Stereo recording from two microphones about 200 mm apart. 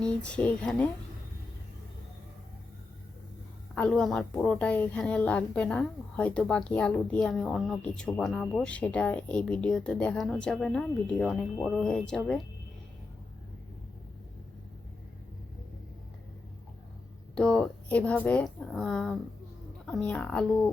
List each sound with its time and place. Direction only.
0.0 s a woman's voice: 5° left (ahead or behind)
3.8 s a woman's voice: 5° left (ahead or behind)
17.3 s a woman's voice: 5° left (ahead or behind)